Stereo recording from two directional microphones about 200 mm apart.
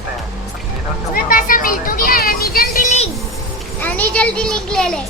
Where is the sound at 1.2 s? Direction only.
45° left (ahead or behind).